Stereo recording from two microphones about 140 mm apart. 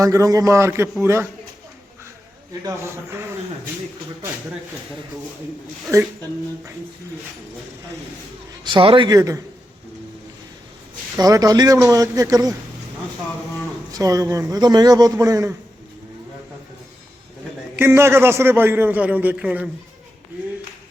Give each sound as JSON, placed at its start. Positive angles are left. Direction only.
{"t": 0.0, "sound": "a man's voice", "side_deg": -25}
{"t": 2.6, "sound": "a man's voice", "side_deg": -20}
{"t": 5.9, "sound": "a man's voice", "side_deg": -20}
{"t": 8.6, "sound": "a man's voice", "side_deg": -35}
{"t": 11.2, "sound": "a man's voice", "side_deg": -25}
{"t": 13.9, "sound": "a man's voice", "side_deg": -25}
{"t": 17.7, "sound": "a man's voice", "side_deg": -15}